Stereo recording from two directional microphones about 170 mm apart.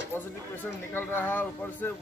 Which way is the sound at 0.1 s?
15° left (ahead or behind).